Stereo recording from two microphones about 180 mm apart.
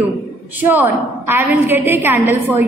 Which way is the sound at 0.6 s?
10° right (ahead or behind).